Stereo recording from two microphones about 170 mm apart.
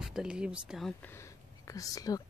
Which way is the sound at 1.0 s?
15° left (ahead or behind).